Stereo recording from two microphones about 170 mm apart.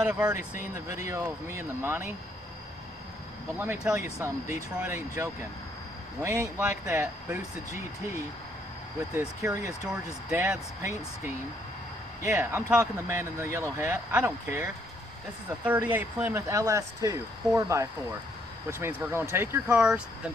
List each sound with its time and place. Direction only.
0.0 s speech: 5° right (ahead or behind)
0.8 s speech: 15° right (ahead or behind)
3.5 s speech: 10° right (ahead or behind)
6.6 s speech: 10° right (ahead or behind)
9.1 s speech: 15° right (ahead or behind)